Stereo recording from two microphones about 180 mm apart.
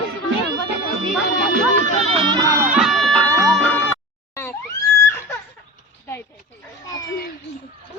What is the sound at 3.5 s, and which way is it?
Music, 10° left (ahead or behind).